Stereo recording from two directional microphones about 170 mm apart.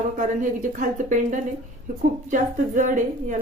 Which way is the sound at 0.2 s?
50° right (ahead or behind).